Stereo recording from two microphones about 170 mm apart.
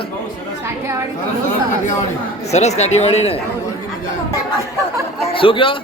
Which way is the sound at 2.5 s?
40° left (ahead or behind).